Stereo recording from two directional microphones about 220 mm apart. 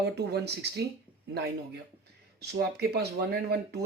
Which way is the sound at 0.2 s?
50° right (ahead or behind).